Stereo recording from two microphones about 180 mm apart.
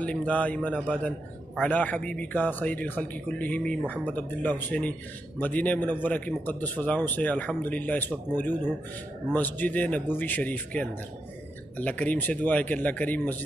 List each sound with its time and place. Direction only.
0.0 s a man's voice: 10° left (ahead or behind)
9.3 s a man's voice: 10° left (ahead or behind)